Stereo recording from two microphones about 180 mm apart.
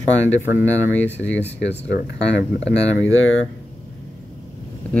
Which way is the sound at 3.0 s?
90° left.